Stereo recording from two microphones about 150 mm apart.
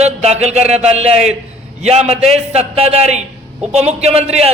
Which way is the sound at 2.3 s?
45° right (ahead or behind).